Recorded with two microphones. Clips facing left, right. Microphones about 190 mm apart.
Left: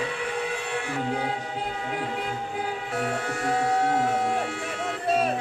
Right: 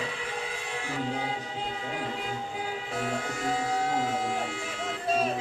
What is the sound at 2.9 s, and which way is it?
Speech, 65° left (ahead or behind).